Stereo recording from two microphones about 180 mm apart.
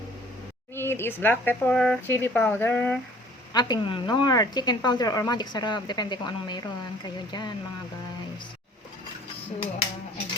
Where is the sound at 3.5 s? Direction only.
25° left (ahead or behind).